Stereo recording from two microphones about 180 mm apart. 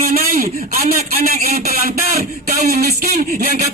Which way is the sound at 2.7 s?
60° right (ahead or behind).